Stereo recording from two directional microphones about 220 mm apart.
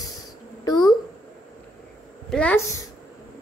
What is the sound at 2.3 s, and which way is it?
Speech, 10° left (ahead or behind).